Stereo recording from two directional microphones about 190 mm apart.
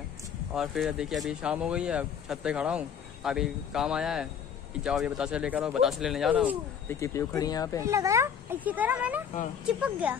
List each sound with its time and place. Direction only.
0.6 s speech: centre (ahead or behind)
6.9 s speech: 15° left (ahead or behind)
7.8 s speech: 15° right (ahead or behind)